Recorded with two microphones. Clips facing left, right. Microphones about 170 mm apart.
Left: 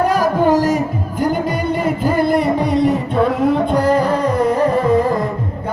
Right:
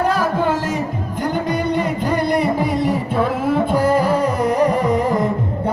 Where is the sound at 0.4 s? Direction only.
40° left (ahead or behind).